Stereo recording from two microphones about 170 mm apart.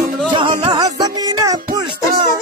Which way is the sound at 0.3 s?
30° right (ahead or behind).